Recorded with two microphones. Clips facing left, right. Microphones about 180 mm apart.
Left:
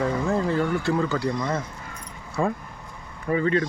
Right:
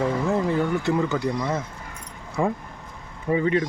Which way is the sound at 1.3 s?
5° right (ahead or behind).